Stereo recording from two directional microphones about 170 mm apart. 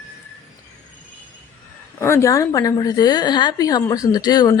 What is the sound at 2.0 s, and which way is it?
Speech, 15° left (ahead or behind).